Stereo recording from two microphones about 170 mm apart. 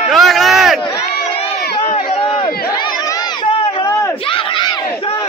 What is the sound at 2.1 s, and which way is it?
Crowd, 30° left (ahead or behind).